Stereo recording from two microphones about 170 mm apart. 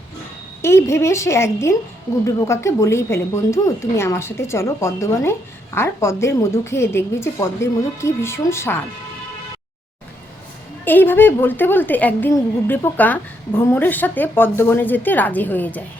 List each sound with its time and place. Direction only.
0.6 s a woman's voice: 15° left (ahead or behind)
10.8 s a woman's voice: 10° left (ahead or behind)